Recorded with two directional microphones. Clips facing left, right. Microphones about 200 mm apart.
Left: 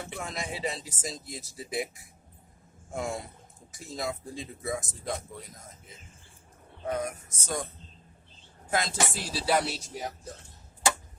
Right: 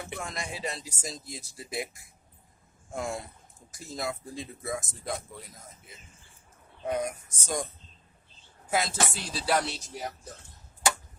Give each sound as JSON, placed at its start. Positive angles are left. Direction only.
{"t": 0.2, "sound": "speech", "side_deg": 0}
{"t": 6.8, "sound": "speech", "side_deg": -15}
{"t": 8.7, "sound": "speech", "side_deg": 0}